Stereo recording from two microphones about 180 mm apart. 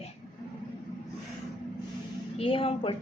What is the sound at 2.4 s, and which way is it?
Speech, 30° left (ahead or behind).